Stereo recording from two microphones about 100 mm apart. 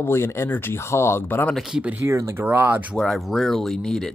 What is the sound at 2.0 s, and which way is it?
Speech, 25° right (ahead or behind).